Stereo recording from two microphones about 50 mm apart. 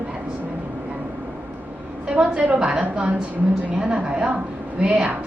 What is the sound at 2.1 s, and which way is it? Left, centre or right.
A woman's voice, right.